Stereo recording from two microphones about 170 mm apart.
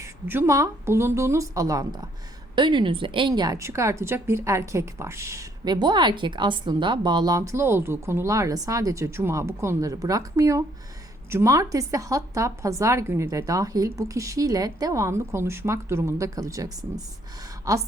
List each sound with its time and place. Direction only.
0.0 s a woman's voice: 15° right (ahead or behind)